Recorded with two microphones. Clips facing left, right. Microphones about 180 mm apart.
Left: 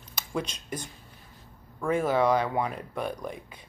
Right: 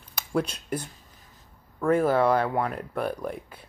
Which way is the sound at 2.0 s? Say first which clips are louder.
Even; 5° right (ahead or behind).